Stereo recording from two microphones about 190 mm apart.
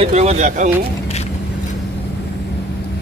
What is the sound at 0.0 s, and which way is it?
Speech, 35° right (ahead or behind).